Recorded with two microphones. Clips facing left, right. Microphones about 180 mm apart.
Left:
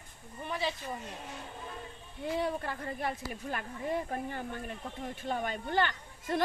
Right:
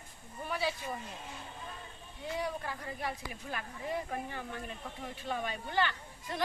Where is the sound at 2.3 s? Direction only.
55° left (ahead or behind).